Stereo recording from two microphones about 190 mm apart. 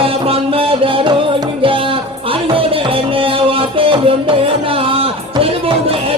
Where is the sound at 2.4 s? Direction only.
30° right (ahead or behind).